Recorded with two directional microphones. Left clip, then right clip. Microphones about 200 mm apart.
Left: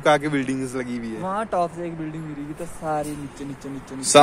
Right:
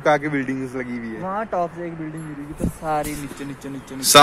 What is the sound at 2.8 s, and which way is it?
Speech, 30° right (ahead or behind).